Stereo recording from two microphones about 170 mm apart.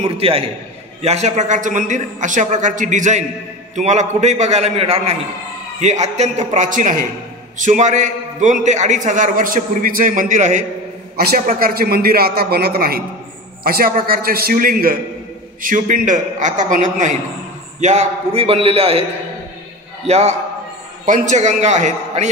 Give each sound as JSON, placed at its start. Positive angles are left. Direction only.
{"t": 0.0, "sound": "a man's voice", "side_deg": -35}
{"t": 11.1, "sound": "a man's voice", "side_deg": -65}
{"t": 20.1, "sound": "a man's voice", "side_deg": -40}